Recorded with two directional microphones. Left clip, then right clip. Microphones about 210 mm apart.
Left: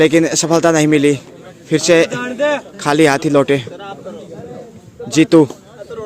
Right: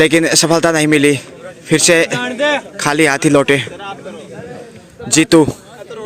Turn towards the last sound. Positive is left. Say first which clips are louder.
# even
turn(degrees=-10)  # may be behind; listen again after turning